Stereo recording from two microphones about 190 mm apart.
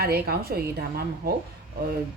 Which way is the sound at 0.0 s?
55° right (ahead or behind).